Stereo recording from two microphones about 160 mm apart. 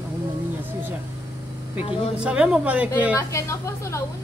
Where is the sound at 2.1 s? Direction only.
5° right (ahead or behind).